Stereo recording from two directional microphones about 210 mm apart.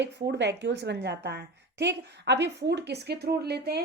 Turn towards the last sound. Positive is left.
turn(degrees=-50)  # may be behind; listen again after turning